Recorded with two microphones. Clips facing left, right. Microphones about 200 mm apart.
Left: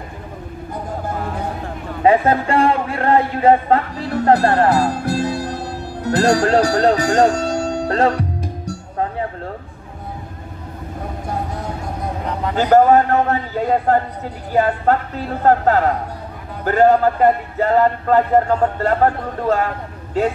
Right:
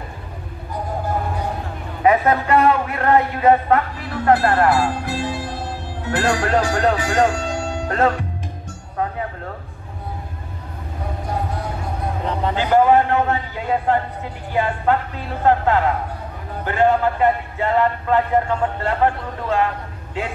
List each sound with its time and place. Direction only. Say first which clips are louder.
2.0 s speech: left 2 dB; 30° left (ahead or behind)
6.6 s music: left 4 dB; 40° left (ahead or behind)
12.5 s a man's voice: left 3 dB; 40° left (ahead or behind)